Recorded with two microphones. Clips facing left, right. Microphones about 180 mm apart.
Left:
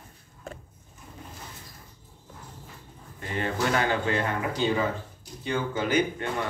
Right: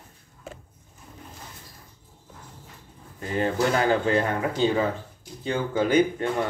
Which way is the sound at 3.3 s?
35° right (ahead or behind).